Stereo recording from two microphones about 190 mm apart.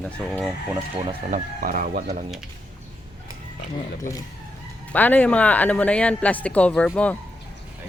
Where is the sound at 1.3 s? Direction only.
50° right (ahead or behind).